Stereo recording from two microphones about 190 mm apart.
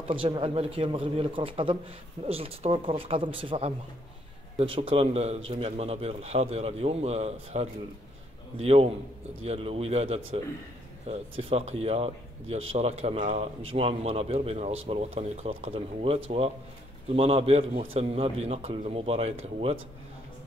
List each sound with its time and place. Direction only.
0.1 s a man's voice: 30° right (ahead or behind)